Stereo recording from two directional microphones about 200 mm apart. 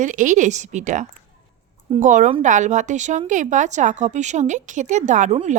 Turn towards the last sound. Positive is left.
turn(degrees=-40)  # may be behind; listen again after turning